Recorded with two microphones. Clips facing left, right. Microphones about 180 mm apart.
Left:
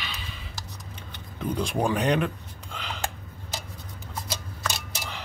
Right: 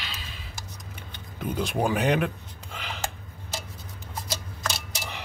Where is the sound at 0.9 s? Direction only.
5° right (ahead or behind).